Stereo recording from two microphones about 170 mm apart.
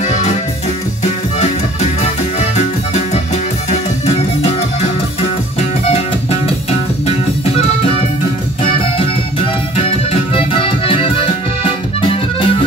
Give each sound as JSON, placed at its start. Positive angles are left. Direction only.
{"t": 2.5, "sound": "music", "side_deg": 40}
{"t": 10.3, "sound": "accordion", "side_deg": 30}